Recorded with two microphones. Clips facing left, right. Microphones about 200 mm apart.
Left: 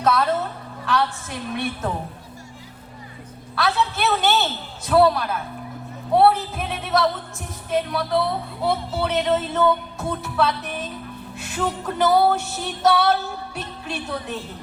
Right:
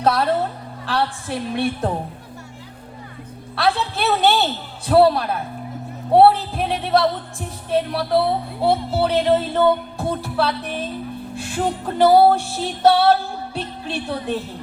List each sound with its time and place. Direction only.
0.0 s music: 30° right (ahead or behind)
3.5 s music: 30° right (ahead or behind)